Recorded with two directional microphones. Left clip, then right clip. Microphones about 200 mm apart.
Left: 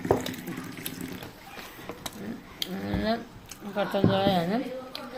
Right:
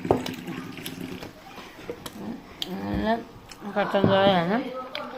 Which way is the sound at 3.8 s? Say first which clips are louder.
Right 5 dB; 5° left (ahead or behind).